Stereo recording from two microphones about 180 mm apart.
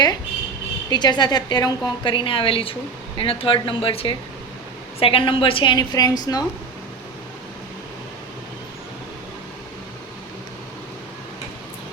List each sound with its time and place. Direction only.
0.9 s a woman's voice: 25° left (ahead or behind)